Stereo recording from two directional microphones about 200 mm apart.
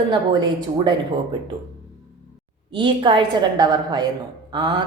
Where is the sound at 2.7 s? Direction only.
25° right (ahead or behind).